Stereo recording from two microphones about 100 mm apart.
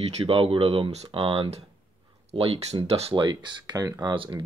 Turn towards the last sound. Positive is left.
turn(degrees=-45)  # may be behind; listen again after turning